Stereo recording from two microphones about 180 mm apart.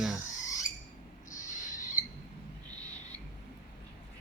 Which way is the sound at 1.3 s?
20° left (ahead or behind).